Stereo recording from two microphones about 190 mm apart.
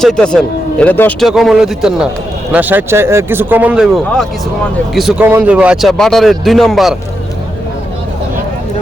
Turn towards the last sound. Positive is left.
turn(degrees=0)  # may be behind; listen again after turning